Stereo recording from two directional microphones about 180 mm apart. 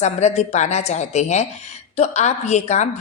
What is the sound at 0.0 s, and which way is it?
Speech, 40° left (ahead or behind).